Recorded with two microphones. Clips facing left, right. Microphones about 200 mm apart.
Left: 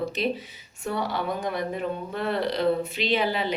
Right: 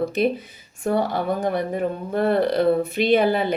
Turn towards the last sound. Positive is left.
turn(degrees=-50)  # may be behind; listen again after turning